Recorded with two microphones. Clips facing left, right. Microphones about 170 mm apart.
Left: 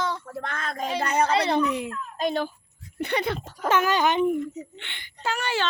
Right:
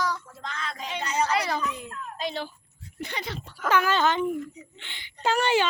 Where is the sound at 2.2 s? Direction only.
50° left (ahead or behind).